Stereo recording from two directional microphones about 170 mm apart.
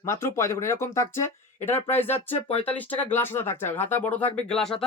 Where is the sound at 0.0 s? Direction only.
15° left (ahead or behind).